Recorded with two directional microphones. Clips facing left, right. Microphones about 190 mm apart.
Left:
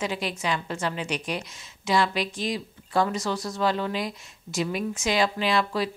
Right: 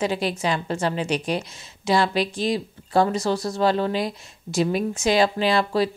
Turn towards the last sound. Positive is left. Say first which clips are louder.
# right 4 dB
turn(degrees=-35)  # may be behind; listen again after turning